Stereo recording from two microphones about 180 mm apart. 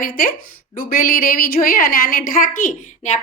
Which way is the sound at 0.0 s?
50° left (ahead or behind).